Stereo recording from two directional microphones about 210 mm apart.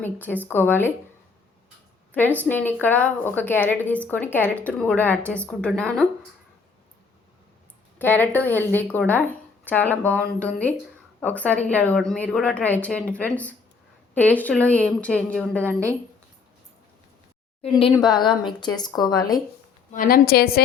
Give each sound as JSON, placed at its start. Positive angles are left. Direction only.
{"t": 0.0, "sound": "a woman's voice", "side_deg": 10}
{"t": 2.1, "sound": "a woman's voice", "side_deg": 10}
{"t": 7.9, "sound": "a woman's voice", "side_deg": 10}
{"t": 17.6, "sound": "speech", "side_deg": 25}
{"t": 19.9, "sound": "a woman's voice", "side_deg": 40}